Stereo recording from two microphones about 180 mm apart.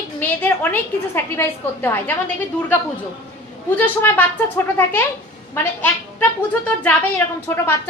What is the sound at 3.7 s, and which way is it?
Speech, 10° left (ahead or behind).